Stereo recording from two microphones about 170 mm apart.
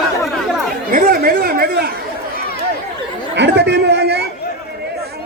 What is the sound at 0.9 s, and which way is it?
Speech, 55° right (ahead or behind).